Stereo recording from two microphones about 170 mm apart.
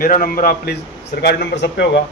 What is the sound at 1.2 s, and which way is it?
Speech, 85° left.